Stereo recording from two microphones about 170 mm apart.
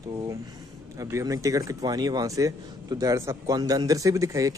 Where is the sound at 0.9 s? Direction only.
20° right (ahead or behind).